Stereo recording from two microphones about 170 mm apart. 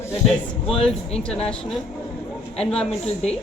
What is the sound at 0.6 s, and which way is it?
Speech, 35° left (ahead or behind).